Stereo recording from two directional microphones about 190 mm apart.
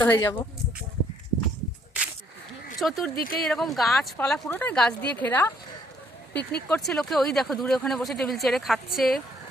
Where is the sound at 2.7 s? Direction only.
Centre (ahead or behind).